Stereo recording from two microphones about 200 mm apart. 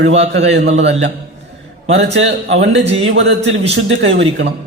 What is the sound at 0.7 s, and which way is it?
Speech, 35° right (ahead or behind).